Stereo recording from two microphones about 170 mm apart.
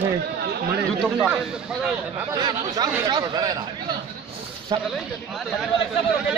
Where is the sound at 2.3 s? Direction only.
25° right (ahead or behind).